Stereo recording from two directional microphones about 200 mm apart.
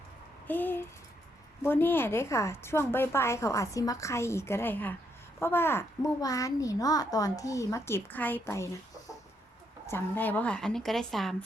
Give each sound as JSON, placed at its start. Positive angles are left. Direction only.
{"t": 0.4, "sound": "a sound", "side_deg": 10}
{"t": 1.6, "sound": "a woman's voice", "side_deg": 10}
{"t": 9.8, "sound": "speech", "side_deg": 10}